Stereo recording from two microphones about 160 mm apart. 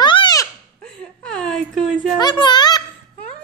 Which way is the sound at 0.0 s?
30° left (ahead or behind).